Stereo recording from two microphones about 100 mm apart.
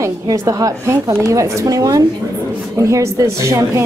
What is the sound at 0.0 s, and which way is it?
A woman's voice, 35° right (ahead or behind).